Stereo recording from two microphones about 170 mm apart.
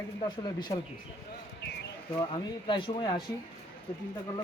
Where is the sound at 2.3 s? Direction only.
30° left (ahead or behind).